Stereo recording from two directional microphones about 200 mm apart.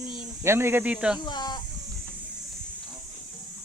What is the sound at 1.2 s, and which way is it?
Electric shaver, 20° left (ahead or behind).